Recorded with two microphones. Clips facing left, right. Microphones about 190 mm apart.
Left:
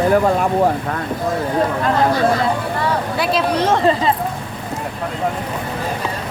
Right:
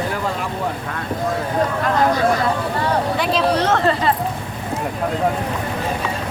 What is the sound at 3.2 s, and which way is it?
Speech, 10° left (ahead or behind).